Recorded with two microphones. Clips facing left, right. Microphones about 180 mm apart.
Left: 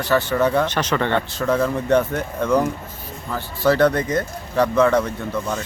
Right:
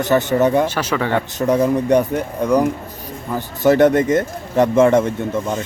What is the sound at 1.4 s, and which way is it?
Speech, 20° right (ahead or behind).